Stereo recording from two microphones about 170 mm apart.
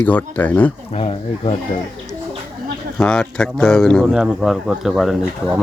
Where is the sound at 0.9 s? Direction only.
35° left (ahead or behind).